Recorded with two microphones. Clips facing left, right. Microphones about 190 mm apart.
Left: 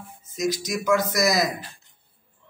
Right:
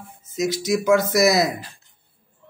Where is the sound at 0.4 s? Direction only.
25° right (ahead or behind).